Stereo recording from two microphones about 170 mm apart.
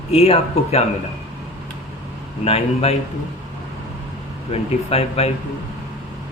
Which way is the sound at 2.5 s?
40° left (ahead or behind).